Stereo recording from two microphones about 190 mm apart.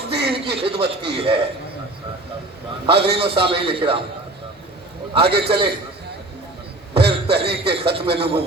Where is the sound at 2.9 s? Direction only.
60° right (ahead or behind).